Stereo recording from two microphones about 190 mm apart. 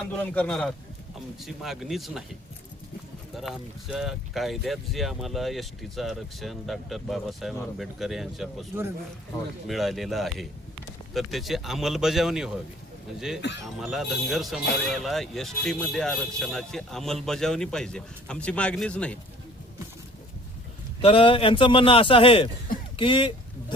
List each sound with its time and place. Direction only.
0.0 s speech: 5° left (ahead or behind)
3.3 s speech: centre (ahead or behind)
9.6 s speech: centre (ahead or behind)
21.0 s a man's voice: 30° left (ahead or behind)
23.0 s a sound: 25° left (ahead or behind)